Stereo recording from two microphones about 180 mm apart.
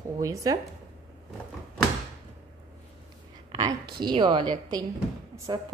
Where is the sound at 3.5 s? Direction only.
25° right (ahead or behind).